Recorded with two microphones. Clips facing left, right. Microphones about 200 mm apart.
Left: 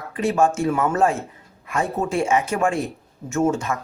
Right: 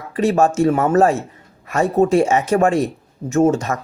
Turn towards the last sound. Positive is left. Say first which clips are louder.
# right 5 dB
turn(degrees=-40)  # may be behind; listen again after turning